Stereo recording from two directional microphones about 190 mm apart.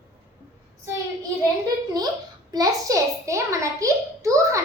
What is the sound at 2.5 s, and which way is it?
A child's voice, 20° right (ahead or behind).